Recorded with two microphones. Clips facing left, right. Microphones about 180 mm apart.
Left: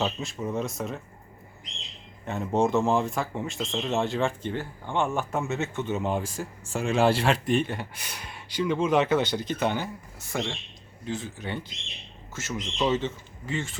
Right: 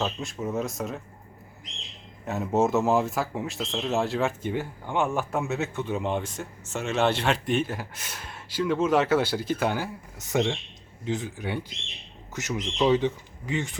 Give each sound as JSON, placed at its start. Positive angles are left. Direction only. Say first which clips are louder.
{"t": 0.0, "sound": "speech", "louder": "even", "side_deg": 0}
{"t": 2.2, "sound": "speech", "louder": "right 1 dB", "side_deg": -5}
{"t": 10.2, "sound": "speech", "louder": "right 6 dB", "side_deg": -20}